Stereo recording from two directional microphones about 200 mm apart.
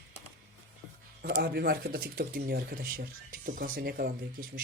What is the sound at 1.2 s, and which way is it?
Speech, 55° right (ahead or behind).